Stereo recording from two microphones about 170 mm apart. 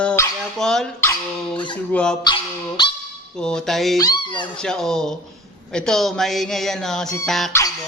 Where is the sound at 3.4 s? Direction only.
5° left (ahead or behind).